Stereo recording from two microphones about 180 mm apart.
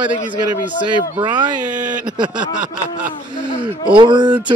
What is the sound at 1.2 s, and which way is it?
Speech, 25° right (ahead or behind).